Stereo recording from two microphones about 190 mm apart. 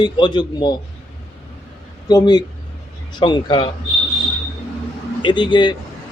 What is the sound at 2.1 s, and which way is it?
A man's voice, 20° left (ahead or behind).